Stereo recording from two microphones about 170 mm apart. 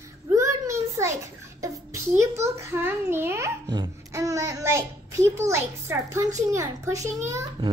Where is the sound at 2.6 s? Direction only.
15° right (ahead or behind).